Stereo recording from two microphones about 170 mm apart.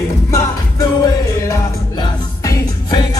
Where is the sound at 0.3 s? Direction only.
20° left (ahead or behind).